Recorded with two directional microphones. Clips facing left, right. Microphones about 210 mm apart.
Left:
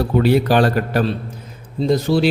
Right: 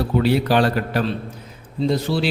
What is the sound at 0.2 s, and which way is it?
A man's voice, 50° left (ahead or behind).